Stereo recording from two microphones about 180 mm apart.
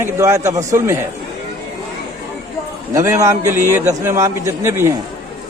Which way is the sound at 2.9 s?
15° right (ahead or behind).